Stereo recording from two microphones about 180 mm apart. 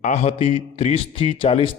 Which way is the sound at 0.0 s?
40° left (ahead or behind).